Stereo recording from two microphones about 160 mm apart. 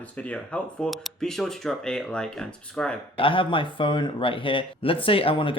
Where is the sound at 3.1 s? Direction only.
35° left (ahead or behind).